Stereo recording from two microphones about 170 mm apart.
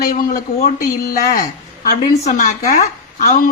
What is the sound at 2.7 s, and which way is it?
Speech, 45° left (ahead or behind).